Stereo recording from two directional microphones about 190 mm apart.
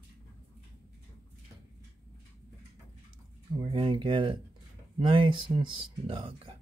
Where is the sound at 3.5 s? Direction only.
25° right (ahead or behind).